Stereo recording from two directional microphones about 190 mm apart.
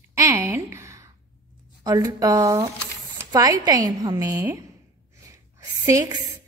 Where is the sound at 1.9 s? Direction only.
20° right (ahead or behind).